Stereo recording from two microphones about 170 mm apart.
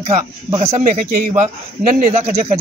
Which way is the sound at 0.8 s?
50° right (ahead or behind).